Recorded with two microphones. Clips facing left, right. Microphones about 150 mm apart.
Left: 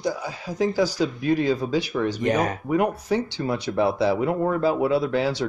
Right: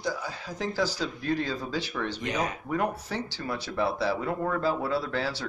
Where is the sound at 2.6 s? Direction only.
15° left (ahead or behind).